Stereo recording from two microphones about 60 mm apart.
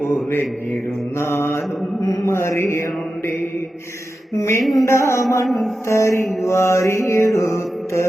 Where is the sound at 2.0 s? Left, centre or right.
Left.